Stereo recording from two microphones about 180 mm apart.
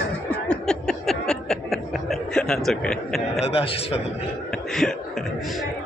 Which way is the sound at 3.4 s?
30° left (ahead or behind).